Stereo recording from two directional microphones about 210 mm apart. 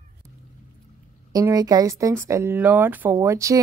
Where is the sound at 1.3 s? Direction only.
15° right (ahead or behind).